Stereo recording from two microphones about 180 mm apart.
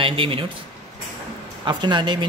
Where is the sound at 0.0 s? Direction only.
30° right (ahead or behind).